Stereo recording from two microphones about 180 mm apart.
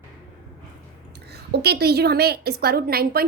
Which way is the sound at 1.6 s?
60° right (ahead or behind).